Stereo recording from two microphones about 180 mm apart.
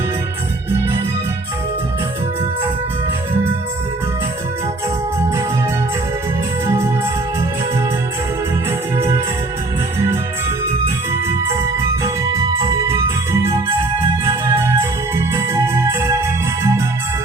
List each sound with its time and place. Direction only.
6.7 s music: 15° right (ahead or behind)
9.0 s music: 15° right (ahead or behind)
11.3 s music: 15° right (ahead or behind)
14.3 s organ: 15° right (ahead or behind)